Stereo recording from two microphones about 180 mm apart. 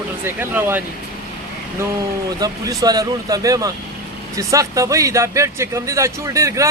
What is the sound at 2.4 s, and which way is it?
Speech, 20° right (ahead or behind).